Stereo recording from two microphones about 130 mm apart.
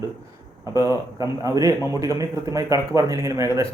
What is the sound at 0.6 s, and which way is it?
A man's voice, 25° right (ahead or behind).